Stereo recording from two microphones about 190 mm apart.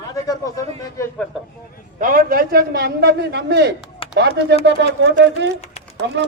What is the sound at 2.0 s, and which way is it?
A man's voice, 45° right (ahead or behind).